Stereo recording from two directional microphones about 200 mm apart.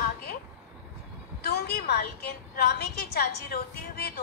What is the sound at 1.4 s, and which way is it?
A woman's voice, 50° left (ahead or behind).